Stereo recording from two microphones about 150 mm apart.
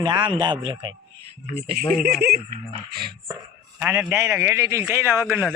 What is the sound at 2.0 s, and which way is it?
Speech, 90° right.